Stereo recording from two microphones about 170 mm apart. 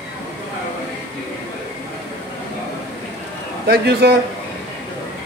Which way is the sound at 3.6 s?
70° right (ahead or behind).